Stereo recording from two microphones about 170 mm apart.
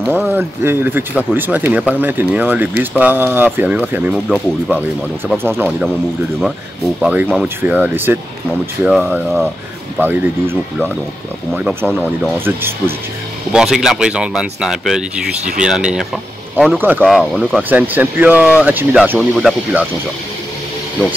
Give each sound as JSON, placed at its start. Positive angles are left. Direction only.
{"t": 0.1, "sound": "speech", "side_deg": -10}
{"t": 4.1, "sound": "speech", "side_deg": 0}
{"t": 5.4, "sound": "speech", "side_deg": -10}
{"t": 7.0, "sound": "speech", "side_deg": -10}
{"t": 15.3, "sound": "speech", "side_deg": -45}
{"t": 15.6, "sound": "speech", "side_deg": -5}
{"t": 17.0, "sound": "speech", "side_deg": 0}